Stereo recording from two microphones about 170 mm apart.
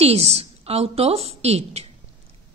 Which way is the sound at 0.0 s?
35° right (ahead or behind).